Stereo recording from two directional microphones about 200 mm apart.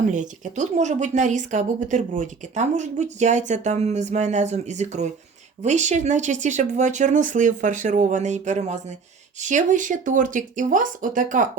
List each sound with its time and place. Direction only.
0.1 s a woman's voice: 35° right (ahead or behind)